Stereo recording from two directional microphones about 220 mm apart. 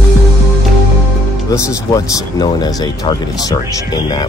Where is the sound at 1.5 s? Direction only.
15° left (ahead or behind).